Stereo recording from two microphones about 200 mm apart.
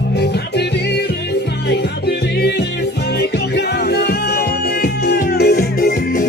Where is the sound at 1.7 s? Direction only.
55° left (ahead or behind).